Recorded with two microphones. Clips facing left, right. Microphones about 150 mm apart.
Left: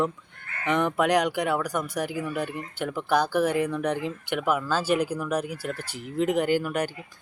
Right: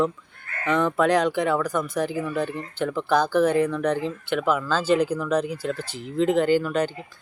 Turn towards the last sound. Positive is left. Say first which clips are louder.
# right 4 dB
turn(degrees=10)  # may be behind; listen again after turning